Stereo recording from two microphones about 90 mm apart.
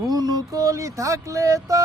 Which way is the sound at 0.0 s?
45° right (ahead or behind).